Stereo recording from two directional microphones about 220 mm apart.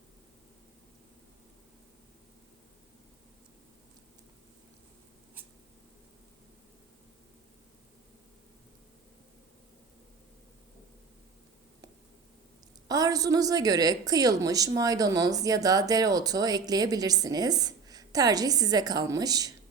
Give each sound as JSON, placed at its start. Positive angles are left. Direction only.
{"t": 12.9, "sound": "a woman's voice", "side_deg": -15}